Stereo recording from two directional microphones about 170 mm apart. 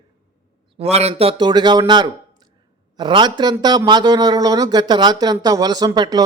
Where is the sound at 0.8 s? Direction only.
40° right (ahead or behind).